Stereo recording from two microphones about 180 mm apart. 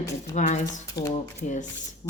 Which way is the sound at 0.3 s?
40° left (ahead or behind).